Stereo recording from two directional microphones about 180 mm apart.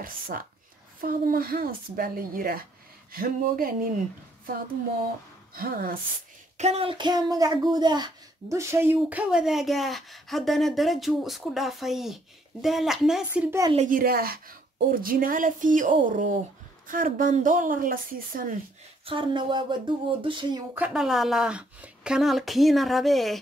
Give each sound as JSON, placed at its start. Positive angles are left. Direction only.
{"t": 0.0, "sound": "a woman's voice", "side_deg": -50}
{"t": 5.5, "sound": "speech", "side_deg": -55}
{"t": 6.6, "sound": "speech", "side_deg": -35}
{"t": 13.8, "sound": "a woman's voice", "side_deg": -55}
{"t": 19.0, "sound": "speech", "side_deg": -30}
{"t": 20.7, "sound": "speech", "side_deg": -5}